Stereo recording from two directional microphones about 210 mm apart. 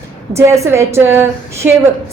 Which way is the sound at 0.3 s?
15° right (ahead or behind).